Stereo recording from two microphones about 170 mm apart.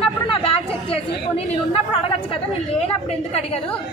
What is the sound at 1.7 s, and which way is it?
A woman's voice, 30° left (ahead or behind).